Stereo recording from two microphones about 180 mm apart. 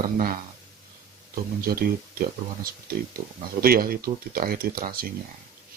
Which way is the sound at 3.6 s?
55° right (ahead or behind).